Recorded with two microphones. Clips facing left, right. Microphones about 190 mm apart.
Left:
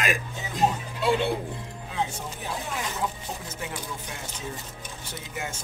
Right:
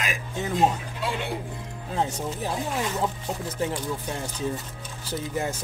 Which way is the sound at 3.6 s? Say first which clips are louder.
Right 10 dB; 35° right (ahead or behind).